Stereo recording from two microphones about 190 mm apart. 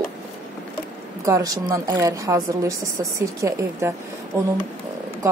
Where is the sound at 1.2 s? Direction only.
15° right (ahead or behind).